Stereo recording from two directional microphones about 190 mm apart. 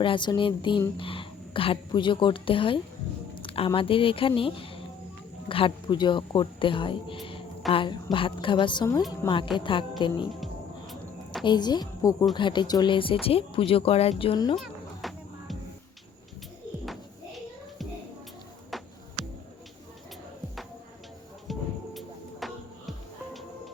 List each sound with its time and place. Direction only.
0.0 s speech: 25° left (ahead or behind)
3.3 s a sound: 30° left (ahead or behind)
3.7 s speech: 30° left (ahead or behind)
11.4 s speech: 20° left (ahead or behind)
14.5 s music: centre (ahead or behind)
16.8 s music: centre (ahead or behind)
21.4 s music: centre (ahead or behind)